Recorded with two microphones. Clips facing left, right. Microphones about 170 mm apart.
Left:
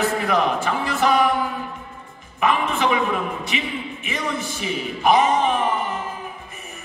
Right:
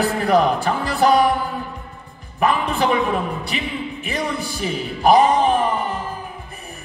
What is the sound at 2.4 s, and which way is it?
A man's voice, 35° right (ahead or behind).